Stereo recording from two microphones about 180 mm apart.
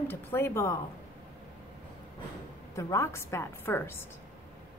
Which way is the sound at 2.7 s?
15° left (ahead or behind).